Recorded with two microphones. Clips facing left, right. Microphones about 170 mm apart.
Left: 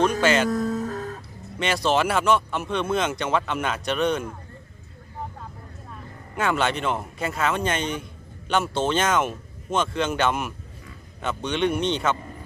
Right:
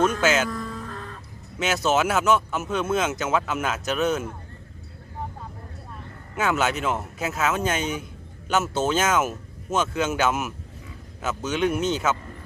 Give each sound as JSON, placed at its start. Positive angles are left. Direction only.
{"t": 0.0, "sound": "music", "side_deg": -5}
{"t": 0.5, "sound": "music", "side_deg": 45}
{"t": 1.5, "sound": "speech", "side_deg": -5}
{"t": 6.3, "sound": "speech", "side_deg": -5}